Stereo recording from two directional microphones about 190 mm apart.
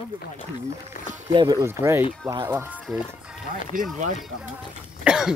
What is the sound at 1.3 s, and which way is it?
Speech, 20° right (ahead or behind).